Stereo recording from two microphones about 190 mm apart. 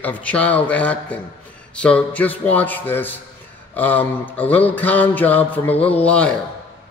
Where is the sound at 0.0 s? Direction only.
10° left (ahead or behind).